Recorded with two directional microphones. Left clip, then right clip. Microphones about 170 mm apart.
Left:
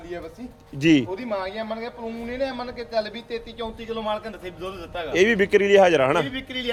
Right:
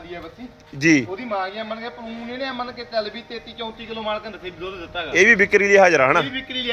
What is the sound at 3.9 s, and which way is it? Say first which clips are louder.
A man's voice: right 1 dB; 35° left (ahead or behind).